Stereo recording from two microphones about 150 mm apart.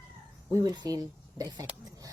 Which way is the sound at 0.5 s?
25° right (ahead or behind).